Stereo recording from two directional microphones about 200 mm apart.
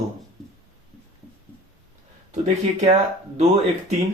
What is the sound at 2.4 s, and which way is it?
Speech, 35° right (ahead or behind).